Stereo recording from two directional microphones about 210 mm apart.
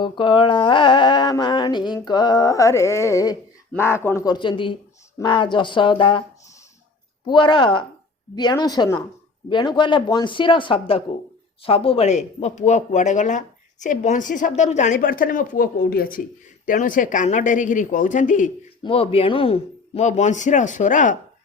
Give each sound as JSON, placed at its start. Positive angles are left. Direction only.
{"t": 0.0, "sound": "speech", "side_deg": 20}
{"t": 7.3, "sound": "speech", "side_deg": 20}
{"t": 18.8, "sound": "speech", "side_deg": 25}